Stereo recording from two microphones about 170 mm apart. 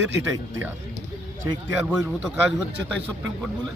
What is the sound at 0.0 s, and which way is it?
Speech, 15° right (ahead or behind).